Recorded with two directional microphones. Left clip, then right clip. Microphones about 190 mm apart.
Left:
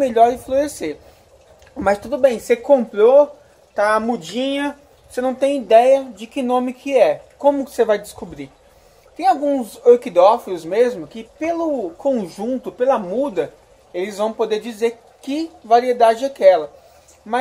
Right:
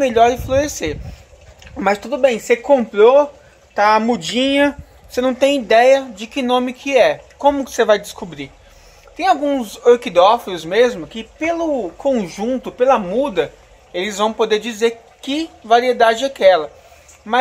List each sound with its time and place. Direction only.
0.0 s speech: centre (ahead or behind)
3.7 s speech: 20° right (ahead or behind)
5.4 s speech: 5° right (ahead or behind)